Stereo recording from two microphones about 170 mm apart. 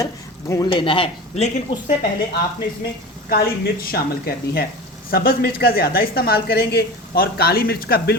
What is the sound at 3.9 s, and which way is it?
A woman's voice, 65° left (ahead or behind).